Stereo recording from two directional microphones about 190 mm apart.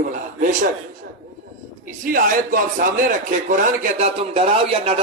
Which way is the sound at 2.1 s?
45° right (ahead or behind).